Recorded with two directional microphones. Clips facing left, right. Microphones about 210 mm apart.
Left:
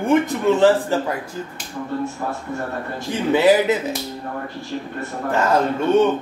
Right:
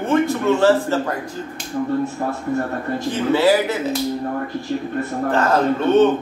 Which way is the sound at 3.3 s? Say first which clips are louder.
Left 2 dB; 15° left (ahead or behind).